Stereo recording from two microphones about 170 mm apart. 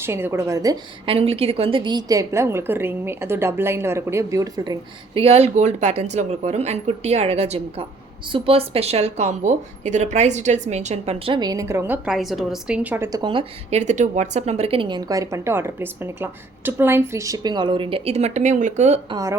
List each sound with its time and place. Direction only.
0.0 s a woman's voice: 15° right (ahead or behind)
1.0 s a woman's voice: 35° right (ahead or behind)
5.2 s a woman's voice: 40° right (ahead or behind)
11.3 s a woman's voice: 20° right (ahead or behind)
12.0 s a woman's voice: centre (ahead or behind); by 13.7 s 30° right (ahead or behind)
13.7 s a woman's voice: 45° right (ahead or behind)
19.1 s a woman's voice: 20° right (ahead or behind)